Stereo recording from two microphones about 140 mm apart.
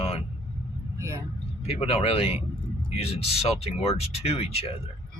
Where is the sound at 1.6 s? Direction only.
45° left (ahead or behind).